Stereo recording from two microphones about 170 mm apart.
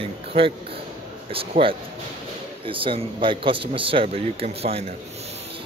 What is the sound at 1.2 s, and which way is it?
Speech, 35° right (ahead or behind).